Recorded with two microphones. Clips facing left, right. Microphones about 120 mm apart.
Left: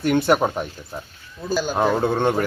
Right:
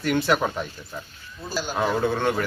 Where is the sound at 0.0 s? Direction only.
50° left (ahead or behind).